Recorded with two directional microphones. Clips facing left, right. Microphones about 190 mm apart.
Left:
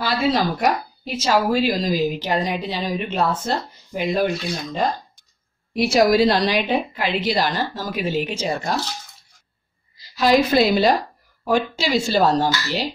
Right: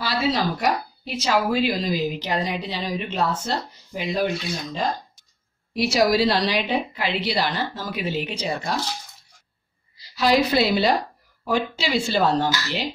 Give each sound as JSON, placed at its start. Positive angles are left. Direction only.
{"t": 0.0, "sound": "a woman's voice", "side_deg": 50}
{"t": 5.8, "sound": "a woman's voice", "side_deg": 50}
{"t": 9.9, "sound": "a woman's voice", "side_deg": 45}